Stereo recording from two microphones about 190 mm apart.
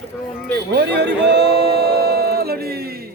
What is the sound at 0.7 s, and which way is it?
Speech, 60° right (ahead or behind).